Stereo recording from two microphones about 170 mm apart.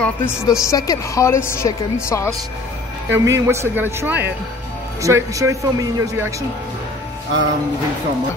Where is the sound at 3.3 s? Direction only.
15° right (ahead or behind).